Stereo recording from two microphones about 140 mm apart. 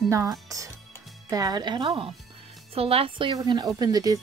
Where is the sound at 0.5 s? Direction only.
25° right (ahead or behind); by 3.3 s 40° right (ahead or behind).